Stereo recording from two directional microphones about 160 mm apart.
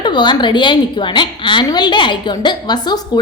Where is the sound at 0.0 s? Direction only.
30° left (ahead or behind).